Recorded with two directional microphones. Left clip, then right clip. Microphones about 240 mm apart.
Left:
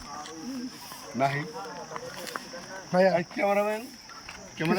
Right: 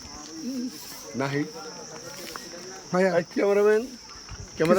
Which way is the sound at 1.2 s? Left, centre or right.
Centre.